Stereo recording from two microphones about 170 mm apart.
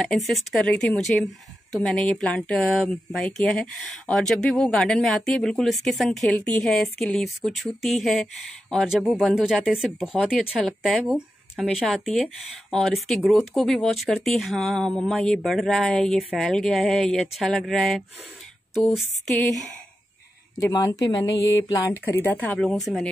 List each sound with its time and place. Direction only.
0.0 s speech: centre (ahead or behind)
19.3 s speech: centre (ahead or behind)
20.5 s a woman's voice: 20° left (ahead or behind); by 23.0 s centre (ahead or behind)